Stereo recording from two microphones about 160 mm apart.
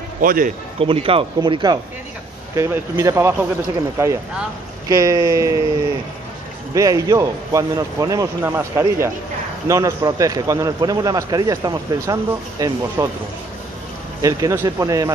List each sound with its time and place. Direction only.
0.2 s a man's voice: 60° right (ahead or behind)
0.7 s a man's voice: 35° right (ahead or behind); by 3.4 s 15° right (ahead or behind)
4.8 s a man's voice: 20° right (ahead or behind)
6.7 s a man's voice: 20° right (ahead or behind)
14.2 s a man's voice: 20° right (ahead or behind)